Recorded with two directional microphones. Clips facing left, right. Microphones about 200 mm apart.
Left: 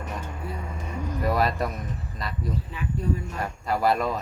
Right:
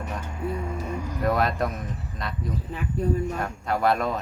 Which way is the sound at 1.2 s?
Centre (ahead or behind).